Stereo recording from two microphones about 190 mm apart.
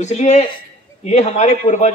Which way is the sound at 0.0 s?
35° left (ahead or behind).